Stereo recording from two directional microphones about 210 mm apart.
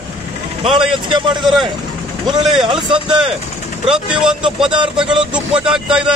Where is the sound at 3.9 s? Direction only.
5° right (ahead or behind).